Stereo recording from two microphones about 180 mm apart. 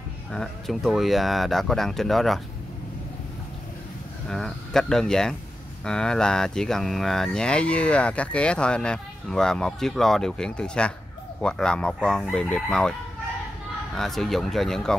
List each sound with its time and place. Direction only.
0.3 s speech: centre (ahead or behind)
4.3 s speech: centre (ahead or behind)
13.9 s speech: centre (ahead or behind)